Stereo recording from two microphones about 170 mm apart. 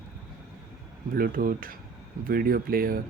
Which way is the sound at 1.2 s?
55° right (ahead or behind).